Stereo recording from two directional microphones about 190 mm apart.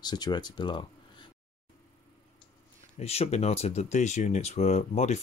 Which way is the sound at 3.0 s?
35° left (ahead or behind).